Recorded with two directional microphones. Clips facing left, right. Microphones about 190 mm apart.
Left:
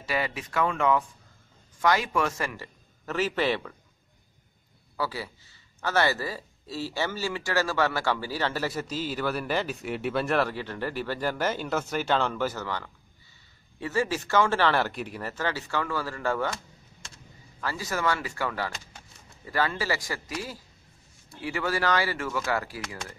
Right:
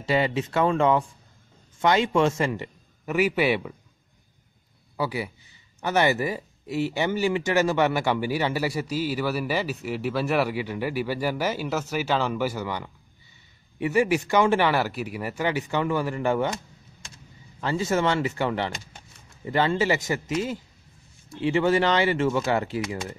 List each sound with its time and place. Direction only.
0.0 s a man's voice: 25° right (ahead or behind)
4.9 s a man's voice: 15° right (ahead or behind)
17.6 s a man's voice: 25° right (ahead or behind)